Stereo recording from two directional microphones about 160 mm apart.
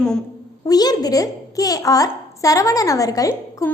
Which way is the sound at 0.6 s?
25° left (ahead or behind).